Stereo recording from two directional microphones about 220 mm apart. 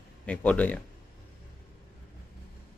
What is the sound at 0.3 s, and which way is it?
Speech, 5° left (ahead or behind).